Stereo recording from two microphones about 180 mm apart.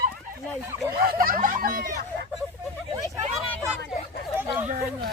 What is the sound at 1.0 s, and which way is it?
Speech, 50° right (ahead or behind).